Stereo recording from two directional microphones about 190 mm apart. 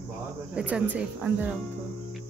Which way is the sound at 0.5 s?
5° right (ahead or behind).